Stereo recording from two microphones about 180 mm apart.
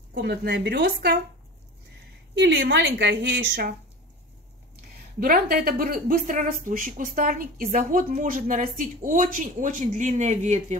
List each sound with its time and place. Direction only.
0.1 s speech: 60° right (ahead or behind)
2.3 s a woman's voice: 70° right (ahead or behind)
5.2 s a woman's voice: 55° right (ahead or behind); by 10.8 s 40° right (ahead or behind)